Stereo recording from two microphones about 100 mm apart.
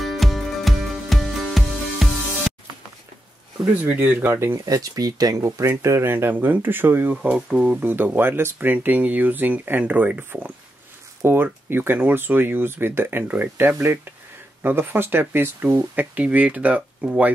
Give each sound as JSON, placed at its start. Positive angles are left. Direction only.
{"t": 0.0, "sound": "music", "side_deg": 0}
{"t": 3.8, "sound": "speech", "side_deg": -15}
{"t": 4.6, "sound": "speech", "side_deg": -35}
{"t": 7.2, "sound": "speech", "side_deg": -10}